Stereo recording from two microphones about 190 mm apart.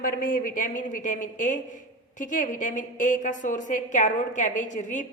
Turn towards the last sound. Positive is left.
turn(degrees=40)  # may be behind; listen again after turning